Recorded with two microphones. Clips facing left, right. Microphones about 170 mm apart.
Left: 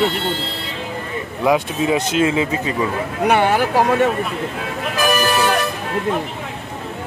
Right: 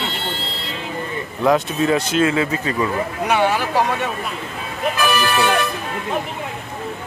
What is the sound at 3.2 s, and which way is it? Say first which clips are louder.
Speech: left 3 dB; 55° left (ahead or behind).